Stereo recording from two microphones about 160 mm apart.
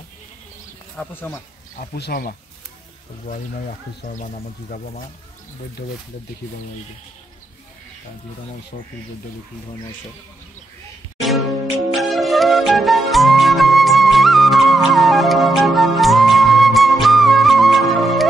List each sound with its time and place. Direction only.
0.9 s speech: 10° left (ahead or behind)
2.0 s speech: 80° left
3.3 s speech: 45° left (ahead or behind)
8.7 s speech: 50° left (ahead or behind)
11.1 s music: centre (ahead or behind)